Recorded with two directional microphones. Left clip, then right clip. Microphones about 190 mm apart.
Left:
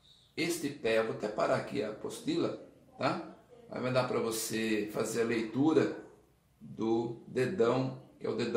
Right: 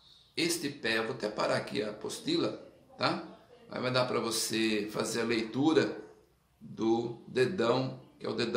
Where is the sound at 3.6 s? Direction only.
15° right (ahead or behind).